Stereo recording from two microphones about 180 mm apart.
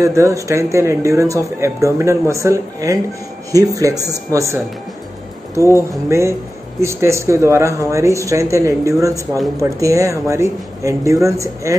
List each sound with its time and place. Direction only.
0.0 s speech: 15° right (ahead or behind)
6.0 s speech: 15° right (ahead or behind)